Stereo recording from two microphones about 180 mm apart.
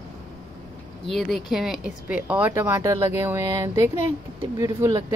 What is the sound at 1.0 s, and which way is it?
Speech, centre (ahead or behind).